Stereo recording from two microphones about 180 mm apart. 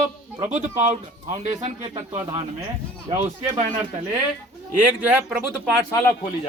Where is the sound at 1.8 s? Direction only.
30° right (ahead or behind).